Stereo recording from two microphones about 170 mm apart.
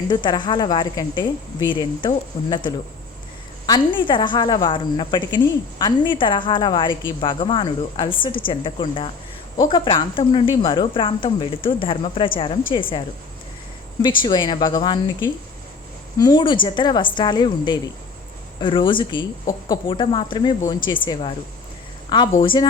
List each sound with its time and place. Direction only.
0.1 s a woman's voice: 25° left (ahead or behind)
14.0 s a woman's voice: 25° left (ahead or behind)
16.1 s a woman's voice: 25° left (ahead or behind)